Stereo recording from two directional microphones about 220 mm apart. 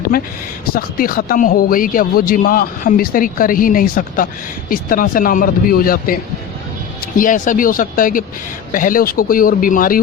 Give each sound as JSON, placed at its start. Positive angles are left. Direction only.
{"t": 0.1, "sound": "speech", "side_deg": 40}
{"t": 7.2, "sound": "speech", "side_deg": 35}